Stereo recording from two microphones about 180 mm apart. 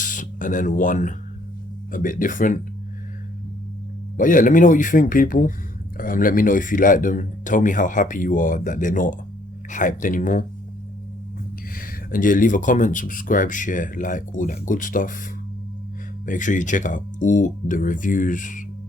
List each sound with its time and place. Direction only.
0.0 s speech: 45° left (ahead or behind)
4.2 s speech: 45° left (ahead or behind)
11.8 s speech: 50° left (ahead or behind)
16.2 s speech: 45° left (ahead or behind)